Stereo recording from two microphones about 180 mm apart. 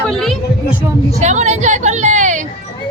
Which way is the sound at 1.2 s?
40° right (ahead or behind).